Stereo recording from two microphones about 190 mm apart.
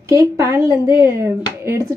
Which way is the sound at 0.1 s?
15° right (ahead or behind).